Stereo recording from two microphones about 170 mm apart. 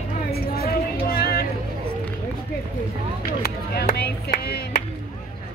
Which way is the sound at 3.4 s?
70° left (ahead or behind).